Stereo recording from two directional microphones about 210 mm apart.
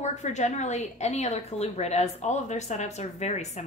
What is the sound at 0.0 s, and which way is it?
A woman's voice, 35° left (ahead or behind).